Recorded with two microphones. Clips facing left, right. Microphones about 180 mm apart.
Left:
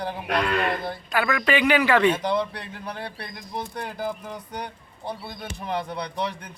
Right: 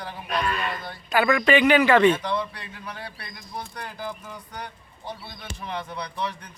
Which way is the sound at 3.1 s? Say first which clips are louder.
Left 4 dB; 25° left (ahead or behind).